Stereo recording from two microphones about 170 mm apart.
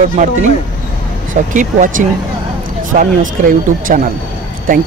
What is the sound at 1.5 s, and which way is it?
Speech, 50° right (ahead or behind).